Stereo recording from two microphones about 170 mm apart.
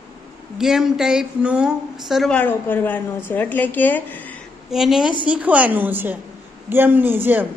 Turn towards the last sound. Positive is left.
turn(degrees=-10)  # may be behind; listen again after turning